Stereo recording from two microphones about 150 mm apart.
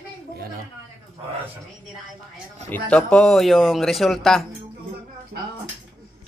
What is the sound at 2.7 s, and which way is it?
Speech, 10° left (ahead or behind).